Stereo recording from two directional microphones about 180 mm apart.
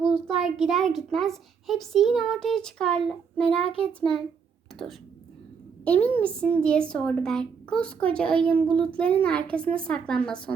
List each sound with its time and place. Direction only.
0.3 s a child's voice: centre (ahead or behind)
3.7 s a child's voice: 30° left (ahead or behind)
5.8 s a woman's voice: 10° left (ahead or behind)